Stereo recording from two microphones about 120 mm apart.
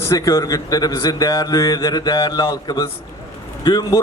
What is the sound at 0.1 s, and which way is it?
Speech, 30° left (ahead or behind).